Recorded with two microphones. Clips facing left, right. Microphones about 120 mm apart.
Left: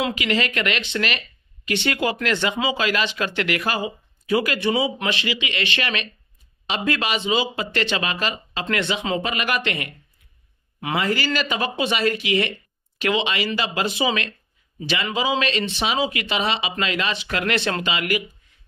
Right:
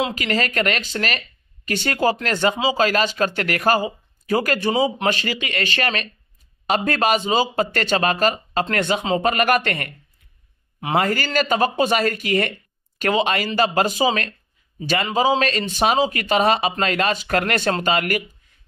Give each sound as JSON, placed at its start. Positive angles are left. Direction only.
{"t": 0.1, "sound": "speech", "side_deg": -40}
{"t": 11.0, "sound": "speech", "side_deg": -45}